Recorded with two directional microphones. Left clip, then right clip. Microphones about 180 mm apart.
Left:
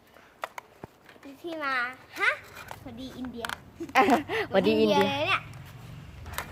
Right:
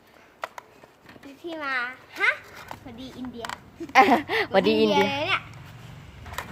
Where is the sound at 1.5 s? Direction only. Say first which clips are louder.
Right 1 dB; 40° left (ahead or behind).